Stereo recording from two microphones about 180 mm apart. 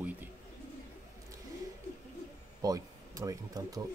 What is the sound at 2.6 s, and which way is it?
Speech, 20° right (ahead or behind).